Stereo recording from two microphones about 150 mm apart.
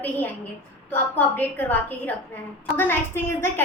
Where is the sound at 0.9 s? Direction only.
10° left (ahead or behind).